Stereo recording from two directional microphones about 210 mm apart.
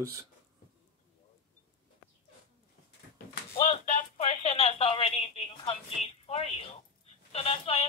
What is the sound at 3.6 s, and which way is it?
Speech, 35° left (ahead or behind).